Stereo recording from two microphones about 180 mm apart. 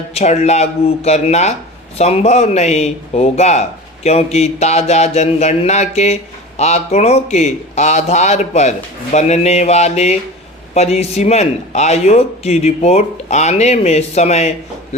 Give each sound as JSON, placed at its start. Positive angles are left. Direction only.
{"t": 0.1, "sound": "speech", "side_deg": 35}